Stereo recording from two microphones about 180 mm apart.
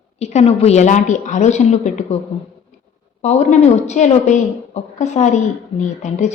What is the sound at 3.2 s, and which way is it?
A woman's voice, 40° left (ahead or behind).